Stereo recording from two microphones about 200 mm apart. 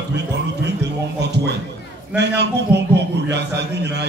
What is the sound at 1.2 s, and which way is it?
A man's voice, 55° right (ahead or behind).